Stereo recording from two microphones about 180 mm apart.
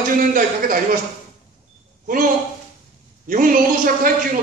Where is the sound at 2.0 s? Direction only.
50° right (ahead or behind).